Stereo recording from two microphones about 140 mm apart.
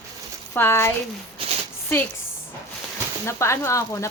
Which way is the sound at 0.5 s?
15° left (ahead or behind).